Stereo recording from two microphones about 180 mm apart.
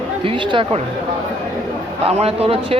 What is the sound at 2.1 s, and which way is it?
Speech, 35° right (ahead or behind).